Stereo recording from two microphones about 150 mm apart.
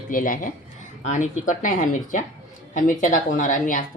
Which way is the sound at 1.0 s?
55° left (ahead or behind).